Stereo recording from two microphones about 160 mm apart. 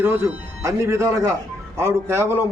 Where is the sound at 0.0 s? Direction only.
15° right (ahead or behind).